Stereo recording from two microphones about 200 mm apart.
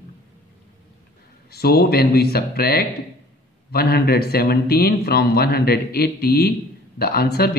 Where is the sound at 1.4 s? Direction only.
50° left (ahead or behind).